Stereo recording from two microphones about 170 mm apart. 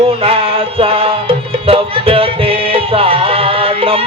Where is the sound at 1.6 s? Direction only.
35° right (ahead or behind).